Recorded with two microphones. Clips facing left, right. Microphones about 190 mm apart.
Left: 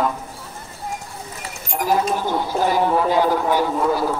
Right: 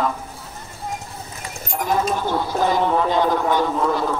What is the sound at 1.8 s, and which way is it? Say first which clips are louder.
Speech: left 1 dB; 10° left (ahead or behind).